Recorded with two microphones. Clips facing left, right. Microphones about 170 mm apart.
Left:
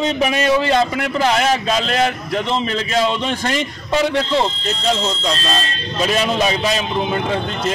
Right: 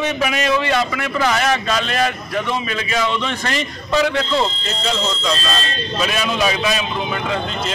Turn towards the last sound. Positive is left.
turn(degrees=25)  # may be behind; listen again after turning